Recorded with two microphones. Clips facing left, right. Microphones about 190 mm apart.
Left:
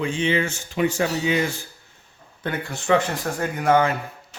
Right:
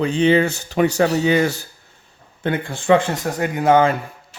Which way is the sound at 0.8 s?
70° right (ahead or behind).